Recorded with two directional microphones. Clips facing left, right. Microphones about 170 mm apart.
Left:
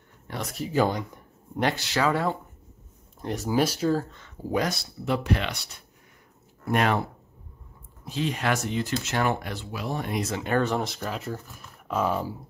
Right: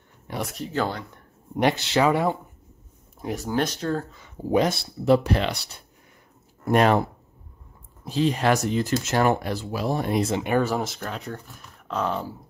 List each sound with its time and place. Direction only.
0.5 s speech: 5° left (ahead or behind)
1.6 s speech: 20° right (ahead or behind)
3.2 s speech: centre (ahead or behind)
4.5 s speech: 25° right (ahead or behind)
10.3 s speech: 15° right (ahead or behind); by 12.4 s 10° left (ahead or behind)